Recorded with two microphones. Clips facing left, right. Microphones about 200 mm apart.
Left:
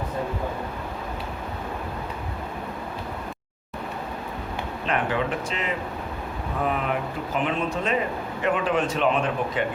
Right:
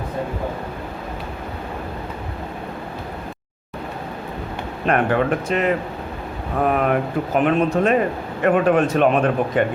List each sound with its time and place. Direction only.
4.9 s speech: 55° right (ahead or behind)